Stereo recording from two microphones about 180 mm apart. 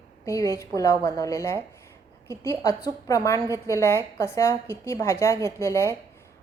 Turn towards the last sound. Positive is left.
turn(degrees=15)  # may be behind; listen again after turning